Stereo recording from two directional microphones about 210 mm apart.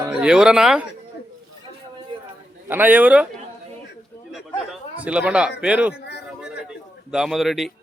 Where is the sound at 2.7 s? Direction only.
10° right (ahead or behind).